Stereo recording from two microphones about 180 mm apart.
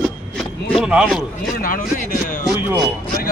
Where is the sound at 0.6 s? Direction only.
Centre (ahead or behind).